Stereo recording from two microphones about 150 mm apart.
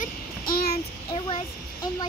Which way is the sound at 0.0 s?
85° left.